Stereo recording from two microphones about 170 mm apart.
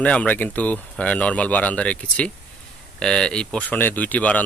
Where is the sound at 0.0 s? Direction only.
10° left (ahead or behind).